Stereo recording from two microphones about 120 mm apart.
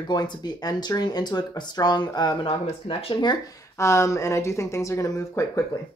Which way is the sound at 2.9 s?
50° left (ahead or behind).